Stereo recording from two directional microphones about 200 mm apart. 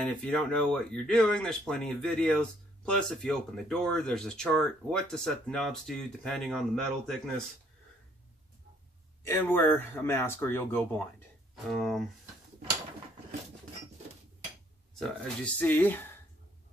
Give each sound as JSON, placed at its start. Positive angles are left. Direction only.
{"t": 0.0, "sound": "speech", "side_deg": 5}
{"t": 9.2, "sound": "speech", "side_deg": 10}
{"t": 14.9, "sound": "speech", "side_deg": 5}